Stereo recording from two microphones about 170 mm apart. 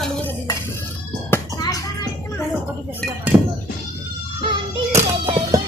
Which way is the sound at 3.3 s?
15° right (ahead or behind).